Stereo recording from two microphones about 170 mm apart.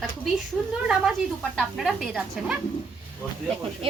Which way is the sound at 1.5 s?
Centre (ahead or behind).